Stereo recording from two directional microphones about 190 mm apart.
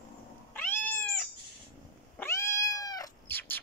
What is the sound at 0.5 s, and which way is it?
Cat, 10° left (ahead or behind).